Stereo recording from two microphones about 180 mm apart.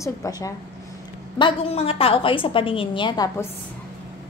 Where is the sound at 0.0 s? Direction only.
20° left (ahead or behind).